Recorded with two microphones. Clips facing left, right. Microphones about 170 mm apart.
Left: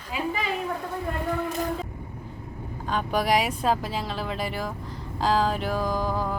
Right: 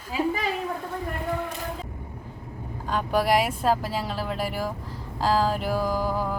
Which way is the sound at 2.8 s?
Centre (ahead or behind).